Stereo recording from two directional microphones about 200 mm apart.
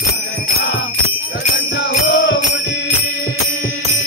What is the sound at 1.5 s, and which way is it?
Music, 55° left (ahead or behind).